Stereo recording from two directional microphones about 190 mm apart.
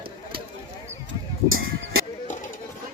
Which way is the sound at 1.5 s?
90° right.